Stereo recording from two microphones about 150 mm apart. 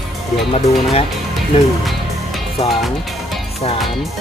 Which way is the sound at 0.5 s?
40° left (ahead or behind).